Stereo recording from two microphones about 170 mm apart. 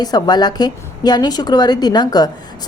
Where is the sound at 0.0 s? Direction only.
25° left (ahead or behind).